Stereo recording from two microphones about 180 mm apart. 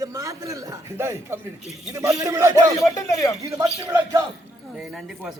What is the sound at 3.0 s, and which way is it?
Speech, 15° left (ahead or behind).